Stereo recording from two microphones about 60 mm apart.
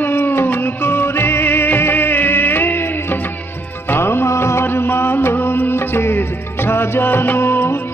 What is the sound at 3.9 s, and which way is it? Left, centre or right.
Music, left.